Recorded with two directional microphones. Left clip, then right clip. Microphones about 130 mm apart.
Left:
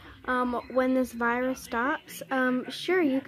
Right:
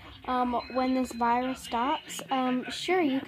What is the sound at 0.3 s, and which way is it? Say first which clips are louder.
Speech: even; 5° right (ahead or behind).